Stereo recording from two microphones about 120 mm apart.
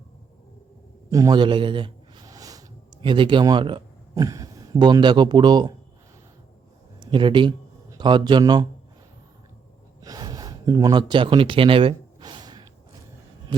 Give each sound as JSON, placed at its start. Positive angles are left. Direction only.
{"t": 1.3, "sound": "a man's voice", "side_deg": -40}
{"t": 2.2, "sound": "a sound", "side_deg": -30}
{"t": 3.0, "sound": "speech", "side_deg": -45}
{"t": 7.0, "sound": "a man's voice", "side_deg": -45}
{"t": 10.0, "sound": "speech", "side_deg": -30}
{"t": 12.2, "sound": "gasp", "side_deg": -35}